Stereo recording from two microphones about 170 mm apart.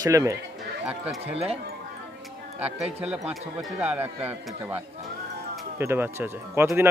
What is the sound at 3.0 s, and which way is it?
Speech, 5° right (ahead or behind).